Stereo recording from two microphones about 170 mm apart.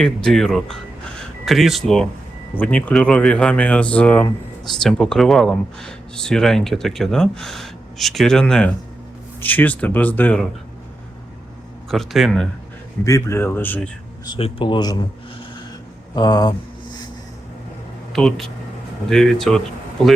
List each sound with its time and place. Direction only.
0.0 s speech: 5° left (ahead or behind)
11.9 s speech: centre (ahead or behind)
13.1 s speech: 15° left (ahead or behind)
14.3 s speech: 30° left (ahead or behind)
16.1 s speech: 25° left (ahead or behind)
18.1 s speech: centre (ahead or behind)